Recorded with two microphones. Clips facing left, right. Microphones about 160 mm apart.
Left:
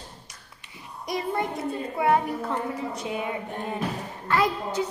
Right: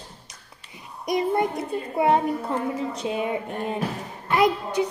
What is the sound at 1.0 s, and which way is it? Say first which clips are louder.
A child's voice: right 5 dB; 20° right (ahead or behind).